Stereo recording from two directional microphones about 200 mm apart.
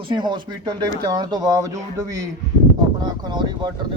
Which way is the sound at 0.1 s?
20° right (ahead or behind).